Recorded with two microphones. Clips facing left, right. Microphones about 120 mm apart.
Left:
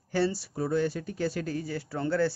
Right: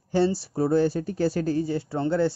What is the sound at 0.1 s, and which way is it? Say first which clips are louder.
Speech: right 5 dB; 25° right (ahead or behind).